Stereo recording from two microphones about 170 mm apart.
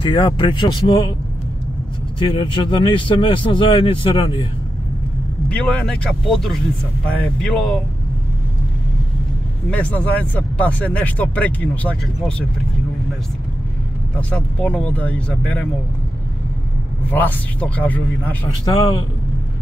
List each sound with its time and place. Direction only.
0.0 s speech: 30° left (ahead or behind)
2.3 s a man's voice: 30° left (ahead or behind)
5.5 s speech: 5° left (ahead or behind)
9.7 s speech: 10° left (ahead or behind)
14.3 s speech: 5° left (ahead or behind)
17.1 s speech: 10° left (ahead or behind)